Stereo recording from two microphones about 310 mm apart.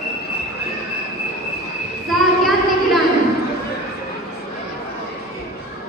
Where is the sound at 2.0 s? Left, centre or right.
Centre.